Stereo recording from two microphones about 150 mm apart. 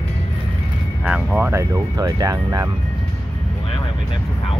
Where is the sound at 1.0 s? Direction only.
5° right (ahead or behind).